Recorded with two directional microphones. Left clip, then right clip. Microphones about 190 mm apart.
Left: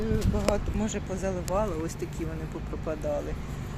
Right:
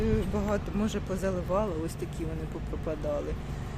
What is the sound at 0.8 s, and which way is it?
A woman's voice, 20° right (ahead or behind).